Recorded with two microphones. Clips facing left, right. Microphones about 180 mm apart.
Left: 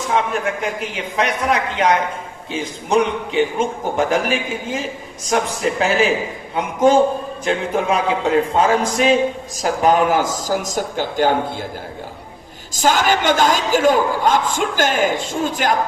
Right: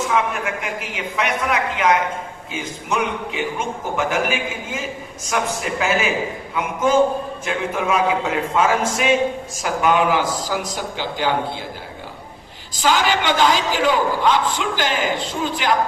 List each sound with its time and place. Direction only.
0.1 s a man's voice: 35° left (ahead or behind)
12.7 s a man's voice: 45° left (ahead or behind)